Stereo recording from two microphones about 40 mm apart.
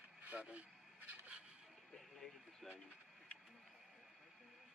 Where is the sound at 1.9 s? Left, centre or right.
Centre.